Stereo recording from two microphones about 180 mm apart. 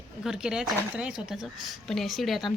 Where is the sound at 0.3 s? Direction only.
5° right (ahead or behind).